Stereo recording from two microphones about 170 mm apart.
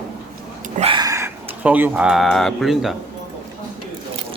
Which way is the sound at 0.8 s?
30° right (ahead or behind).